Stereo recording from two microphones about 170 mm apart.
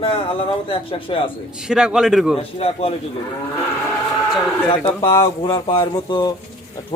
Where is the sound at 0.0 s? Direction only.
30° left (ahead or behind).